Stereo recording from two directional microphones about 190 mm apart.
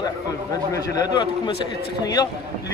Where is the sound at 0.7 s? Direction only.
20° left (ahead or behind).